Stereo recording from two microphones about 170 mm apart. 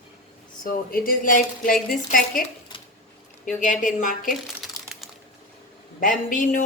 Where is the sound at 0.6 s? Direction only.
60° left (ahead or behind).